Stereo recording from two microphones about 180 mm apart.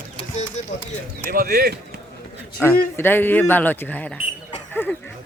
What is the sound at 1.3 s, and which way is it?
Speech, 55° right (ahead or behind).